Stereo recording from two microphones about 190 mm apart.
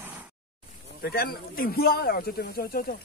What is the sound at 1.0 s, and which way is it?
Speech, 50° left (ahead or behind).